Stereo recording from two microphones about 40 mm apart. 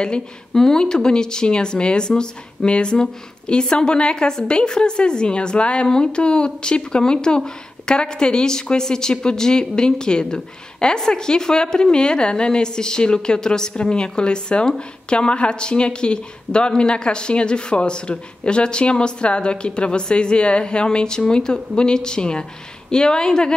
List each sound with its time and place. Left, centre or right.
0.6 s speech: centre